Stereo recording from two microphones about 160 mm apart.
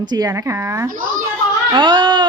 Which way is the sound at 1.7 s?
30° right (ahead or behind).